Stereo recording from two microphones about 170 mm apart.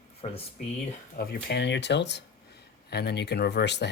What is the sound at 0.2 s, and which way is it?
Speech, 35° left (ahead or behind).